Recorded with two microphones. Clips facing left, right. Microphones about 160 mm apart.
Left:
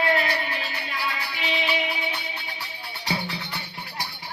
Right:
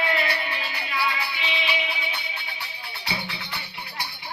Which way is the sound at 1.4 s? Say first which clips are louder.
Left 2 dB; 45° left (ahead or behind).